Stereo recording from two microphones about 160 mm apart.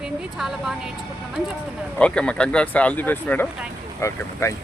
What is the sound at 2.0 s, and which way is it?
Speech, 5° left (ahead or behind).